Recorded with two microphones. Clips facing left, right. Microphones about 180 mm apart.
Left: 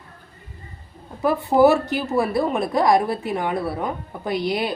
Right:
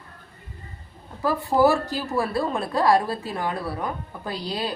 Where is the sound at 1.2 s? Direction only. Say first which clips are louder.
Left 4 dB; 20° left (ahead or behind).